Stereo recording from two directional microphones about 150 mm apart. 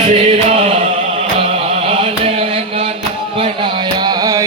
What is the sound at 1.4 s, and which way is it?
Chant, 45° right (ahead or behind).